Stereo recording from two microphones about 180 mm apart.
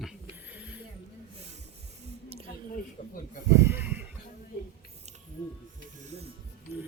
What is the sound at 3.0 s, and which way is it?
Snake, 45° left (ahead or behind).